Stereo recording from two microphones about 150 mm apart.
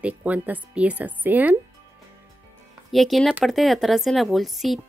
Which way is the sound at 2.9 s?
Centre (ahead or behind).